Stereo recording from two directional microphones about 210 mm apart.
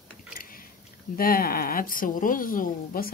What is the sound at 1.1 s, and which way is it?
A woman's voice, 45° left (ahead or behind).